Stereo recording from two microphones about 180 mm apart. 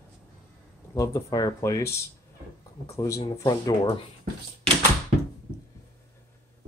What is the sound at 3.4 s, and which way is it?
Speech, 20° left (ahead or behind).